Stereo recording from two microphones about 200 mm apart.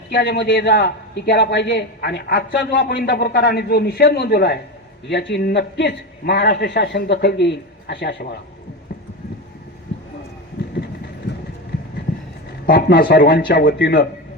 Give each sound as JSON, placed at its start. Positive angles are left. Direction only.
{"t": 0.1, "sound": "a man's voice", "side_deg": 55}
{"t": 12.6, "sound": "speech", "side_deg": 45}